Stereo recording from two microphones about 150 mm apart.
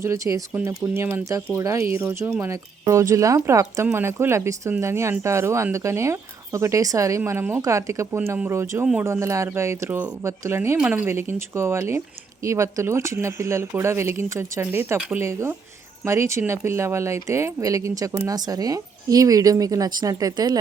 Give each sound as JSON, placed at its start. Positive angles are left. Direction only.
{"t": 0.0, "sound": "speech", "side_deg": -20}